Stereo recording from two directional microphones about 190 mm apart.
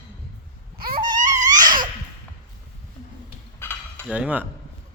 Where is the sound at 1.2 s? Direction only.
40° right (ahead or behind).